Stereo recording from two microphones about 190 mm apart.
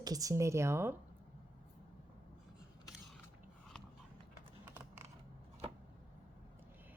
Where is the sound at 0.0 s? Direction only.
20° right (ahead or behind).